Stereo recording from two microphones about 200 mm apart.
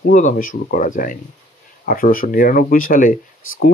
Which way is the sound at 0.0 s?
40° left (ahead or behind).